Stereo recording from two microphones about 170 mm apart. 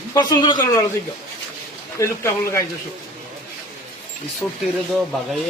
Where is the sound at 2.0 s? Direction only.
15° left (ahead or behind).